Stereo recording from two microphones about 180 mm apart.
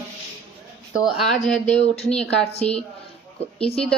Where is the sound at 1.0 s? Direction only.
Centre (ahead or behind).